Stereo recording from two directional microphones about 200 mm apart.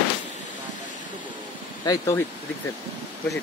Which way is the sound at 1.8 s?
20° left (ahead or behind).